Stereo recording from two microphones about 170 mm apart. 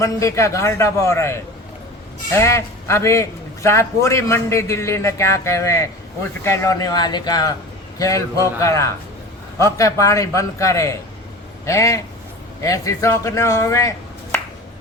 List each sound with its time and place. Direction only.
0.0 s a man's voice: 20° left (ahead or behind)